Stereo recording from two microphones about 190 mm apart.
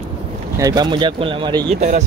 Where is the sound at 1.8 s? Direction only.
40° right (ahead or behind).